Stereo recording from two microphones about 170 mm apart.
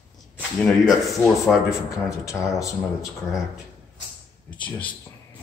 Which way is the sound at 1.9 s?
20° left (ahead or behind).